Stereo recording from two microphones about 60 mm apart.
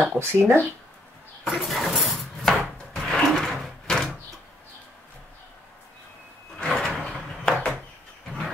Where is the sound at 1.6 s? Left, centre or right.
Centre.